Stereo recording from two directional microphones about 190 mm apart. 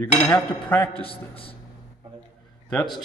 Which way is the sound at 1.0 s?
30° left (ahead or behind).